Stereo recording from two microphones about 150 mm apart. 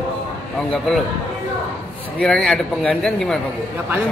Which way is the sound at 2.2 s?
5° left (ahead or behind).